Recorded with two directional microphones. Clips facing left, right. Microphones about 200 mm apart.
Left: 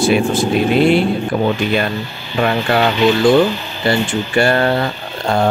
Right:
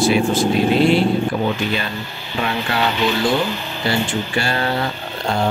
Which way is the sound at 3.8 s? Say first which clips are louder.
Left 4 dB; 55° left (ahead or behind).